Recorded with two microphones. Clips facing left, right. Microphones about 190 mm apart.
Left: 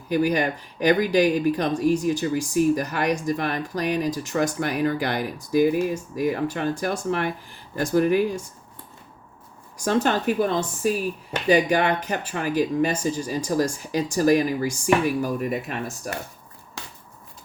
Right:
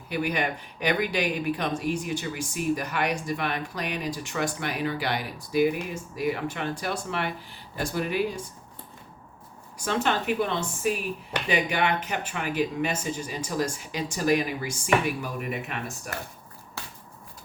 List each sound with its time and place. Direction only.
0.1 s speech: 40° left (ahead or behind)
9.8 s speech: 40° left (ahead or behind)